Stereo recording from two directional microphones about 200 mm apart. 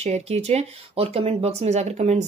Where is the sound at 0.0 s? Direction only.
35° right (ahead or behind).